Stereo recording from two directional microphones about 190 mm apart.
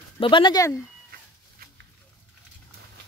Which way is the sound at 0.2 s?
25° left (ahead or behind).